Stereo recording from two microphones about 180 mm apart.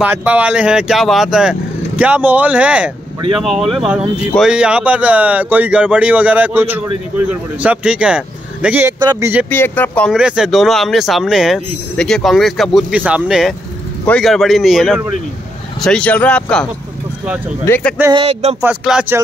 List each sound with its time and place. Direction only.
0.0 s speech: 10° right (ahead or behind)
9.0 s speech: 20° right (ahead or behind)
9.5 s speech: 10° left (ahead or behind)
10.1 s speech: 5° right (ahead or behind)
17.6 s speech: 10° left (ahead or behind)
18.1 s a sound: 35° right (ahead or behind)
18.6 s speech: 5° right (ahead or behind)